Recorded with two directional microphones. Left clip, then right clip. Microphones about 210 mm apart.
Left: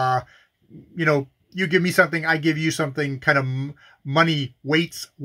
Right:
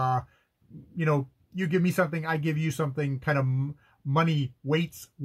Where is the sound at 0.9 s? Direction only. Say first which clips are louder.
Left 8 dB; 5° left (ahead or behind).